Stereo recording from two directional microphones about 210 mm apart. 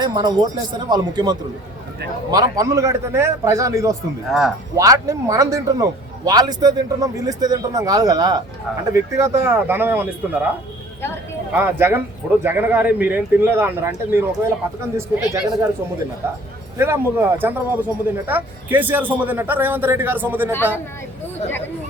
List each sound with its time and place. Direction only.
0.0 s speech: 20° right (ahead or behind)
4.3 s speech: centre (ahead or behind)
4.7 s speech: 15° right (ahead or behind)
11.5 s speech: 10° right (ahead or behind)